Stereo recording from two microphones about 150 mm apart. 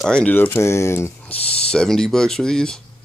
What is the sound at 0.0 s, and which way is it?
Speech, 5° left (ahead or behind).